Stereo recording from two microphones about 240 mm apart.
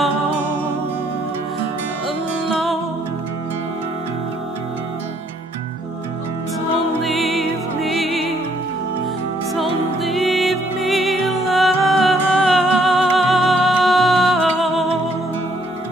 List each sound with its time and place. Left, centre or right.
7.0 s music: centre
9.5 s music: centre